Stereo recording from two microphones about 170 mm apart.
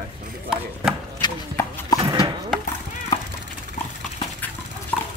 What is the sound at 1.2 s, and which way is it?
Chopping, 25° left (ahead or behind).